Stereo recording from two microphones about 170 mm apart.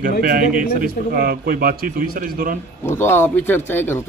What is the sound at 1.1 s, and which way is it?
A man's voice, 65° right (ahead or behind).